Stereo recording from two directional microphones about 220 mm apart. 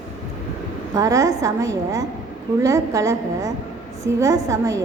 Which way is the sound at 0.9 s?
15° right (ahead or behind).